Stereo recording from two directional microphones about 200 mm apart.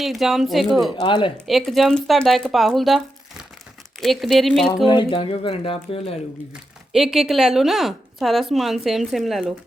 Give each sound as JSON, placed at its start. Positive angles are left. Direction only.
{"t": 0.0, "sound": "speech", "side_deg": 0}
{"t": 1.0, "sound": "speech", "side_deg": 25}
{"t": 1.5, "sound": "speech", "side_deg": 0}
{"t": 4.9, "sound": "speech", "side_deg": 25}
{"t": 6.5, "sound": "speech", "side_deg": 0}